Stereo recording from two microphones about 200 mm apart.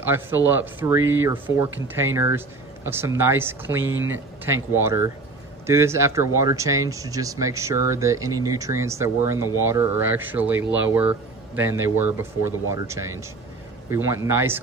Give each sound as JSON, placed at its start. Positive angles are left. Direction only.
{"t": 0.0, "sound": "speech", "side_deg": -10}